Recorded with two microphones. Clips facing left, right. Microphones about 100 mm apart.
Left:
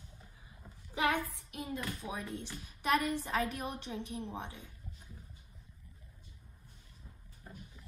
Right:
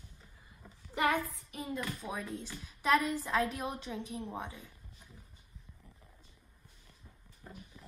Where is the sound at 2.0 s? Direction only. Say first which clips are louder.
Right 1 dB; 5° right (ahead or behind).